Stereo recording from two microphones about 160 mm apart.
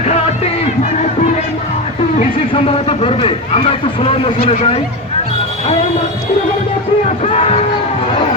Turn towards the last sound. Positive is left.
turn(degrees=40)  # may be behind; listen again after turning